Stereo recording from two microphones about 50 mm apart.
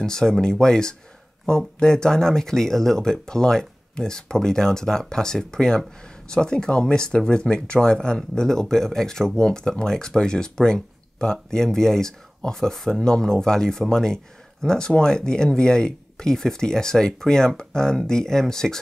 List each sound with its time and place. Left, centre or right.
0.0 s speech: centre